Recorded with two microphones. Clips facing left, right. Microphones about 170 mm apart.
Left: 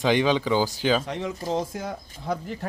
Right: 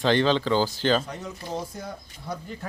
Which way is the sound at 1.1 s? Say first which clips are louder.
Left 6 dB; 90° left.